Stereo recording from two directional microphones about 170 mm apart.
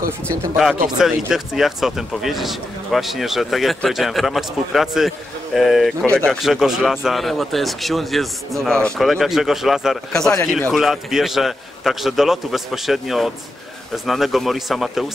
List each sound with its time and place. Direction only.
0.8 s speech: 5° right (ahead or behind)